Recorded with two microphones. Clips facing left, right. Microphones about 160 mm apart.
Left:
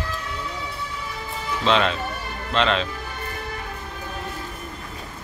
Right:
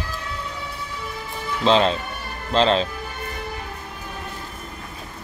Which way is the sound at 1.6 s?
35° right (ahead or behind).